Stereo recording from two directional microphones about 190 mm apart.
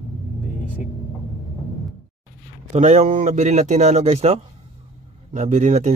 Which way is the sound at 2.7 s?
35° right (ahead or behind).